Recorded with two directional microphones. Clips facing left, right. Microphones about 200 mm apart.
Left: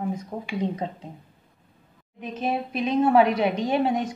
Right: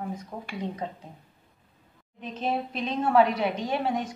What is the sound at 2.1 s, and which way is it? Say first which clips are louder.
A woman's voice: left 2 dB; 10° left (ahead or behind).